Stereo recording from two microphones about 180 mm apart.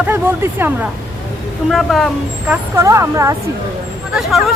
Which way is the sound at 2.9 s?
15° right (ahead or behind).